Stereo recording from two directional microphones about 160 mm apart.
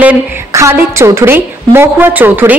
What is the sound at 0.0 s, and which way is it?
A woman's voice, 10° right (ahead or behind).